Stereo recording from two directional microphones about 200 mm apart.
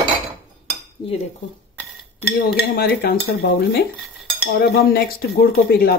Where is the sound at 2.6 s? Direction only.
50° left (ahead or behind).